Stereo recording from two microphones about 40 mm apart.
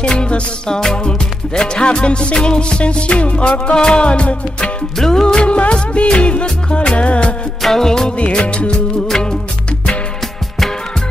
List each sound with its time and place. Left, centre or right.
0.0 s music: left
3.7 s music: centre
4.9 s music: centre
7.6 s music: centre
8.5 s music: left